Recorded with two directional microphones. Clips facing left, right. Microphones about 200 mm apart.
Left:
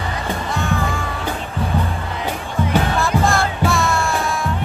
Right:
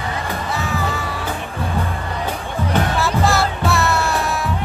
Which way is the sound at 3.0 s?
5° right (ahead or behind).